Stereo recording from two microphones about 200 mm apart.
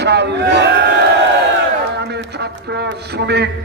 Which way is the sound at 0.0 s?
55° right (ahead or behind).